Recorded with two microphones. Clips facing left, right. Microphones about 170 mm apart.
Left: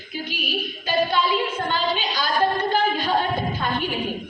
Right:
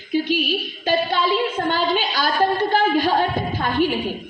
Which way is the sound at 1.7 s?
50° right (ahead or behind).